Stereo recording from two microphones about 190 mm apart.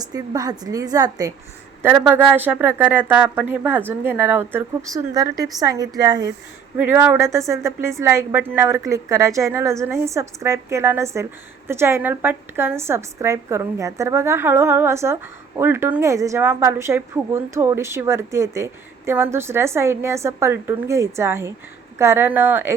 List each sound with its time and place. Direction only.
0.0 s a woman's voice: 20° right (ahead or behind)
1.8 s a woman's voice: 10° right (ahead or behind)